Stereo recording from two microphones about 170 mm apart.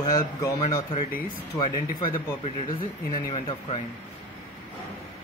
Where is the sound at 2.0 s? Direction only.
30° left (ahead or behind).